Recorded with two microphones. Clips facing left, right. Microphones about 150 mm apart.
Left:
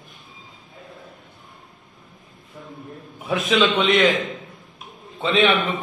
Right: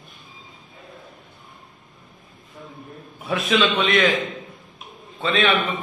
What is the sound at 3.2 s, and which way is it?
Speech, 10° left (ahead or behind).